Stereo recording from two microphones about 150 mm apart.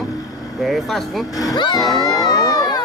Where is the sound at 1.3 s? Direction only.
25° left (ahead or behind).